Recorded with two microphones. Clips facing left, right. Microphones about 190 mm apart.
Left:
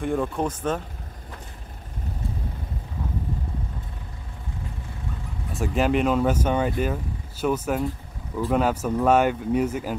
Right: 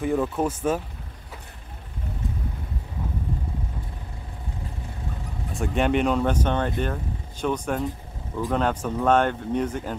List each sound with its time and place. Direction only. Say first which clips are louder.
0.0 s speech: right 1 dB; centre (ahead or behind)
5.5 s speech: even; centre (ahead or behind)